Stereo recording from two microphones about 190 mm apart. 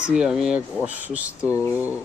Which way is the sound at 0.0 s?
5° right (ahead or behind).